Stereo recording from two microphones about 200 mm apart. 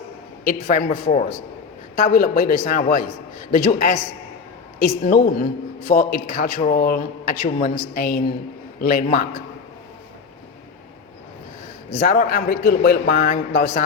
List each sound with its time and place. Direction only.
0.4 s a man's voice: 45° left (ahead or behind)
11.9 s a man's voice: 45° left (ahead or behind)